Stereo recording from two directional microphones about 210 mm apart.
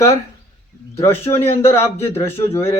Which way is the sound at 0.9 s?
10° left (ahead or behind).